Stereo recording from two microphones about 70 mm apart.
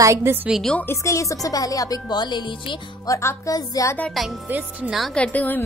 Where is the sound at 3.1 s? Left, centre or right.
Left.